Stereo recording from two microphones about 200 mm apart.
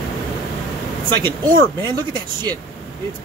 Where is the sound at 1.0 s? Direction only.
20° right (ahead or behind).